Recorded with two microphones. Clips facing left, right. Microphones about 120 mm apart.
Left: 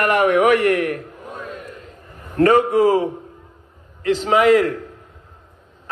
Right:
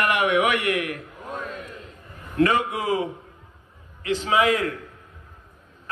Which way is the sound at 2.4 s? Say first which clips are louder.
Left 8 dB; 40° left (ahead or behind).